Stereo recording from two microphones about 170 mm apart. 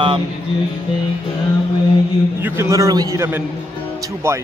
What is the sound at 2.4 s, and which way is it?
Speech, 15° right (ahead or behind).